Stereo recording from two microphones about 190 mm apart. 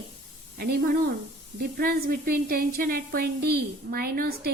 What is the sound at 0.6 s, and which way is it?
A woman's voice, 55° right (ahead or behind).